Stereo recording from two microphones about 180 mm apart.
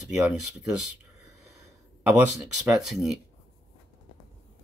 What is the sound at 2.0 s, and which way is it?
Speech, 10° right (ahead or behind).